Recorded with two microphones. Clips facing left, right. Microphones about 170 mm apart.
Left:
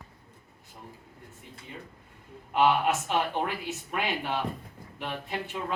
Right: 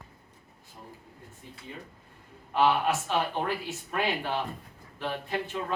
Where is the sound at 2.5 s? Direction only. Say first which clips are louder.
Left 1 dB; 15° left (ahead or behind).